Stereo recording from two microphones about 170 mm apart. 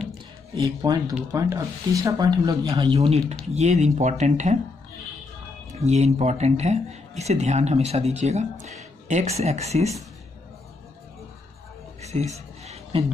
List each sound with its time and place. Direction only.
0.6 s speech: 20° right (ahead or behind); by 4.6 s 45° right (ahead or behind)
5.8 s speech: 40° right (ahead or behind)
12.0 s a sound: 40° right (ahead or behind)